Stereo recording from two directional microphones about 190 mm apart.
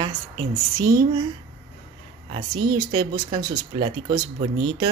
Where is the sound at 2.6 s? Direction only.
20° right (ahead or behind).